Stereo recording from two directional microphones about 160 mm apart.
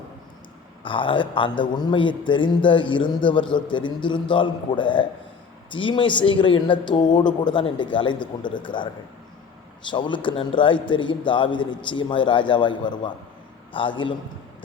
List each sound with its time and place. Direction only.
0.9 s a man's voice: 30° left (ahead or behind)
9.9 s a man's voice: 30° left (ahead or behind)